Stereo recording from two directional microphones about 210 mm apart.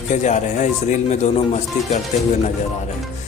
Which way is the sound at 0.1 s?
35° left (ahead or behind).